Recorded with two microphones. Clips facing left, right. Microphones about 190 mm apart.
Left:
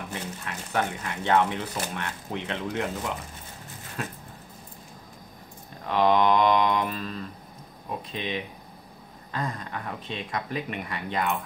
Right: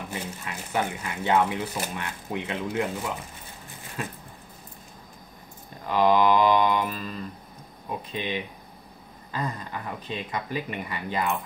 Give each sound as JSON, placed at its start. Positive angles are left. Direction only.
{"t": 0.1, "sound": "speech", "side_deg": -5}
{"t": 5.9, "sound": "speech", "side_deg": 0}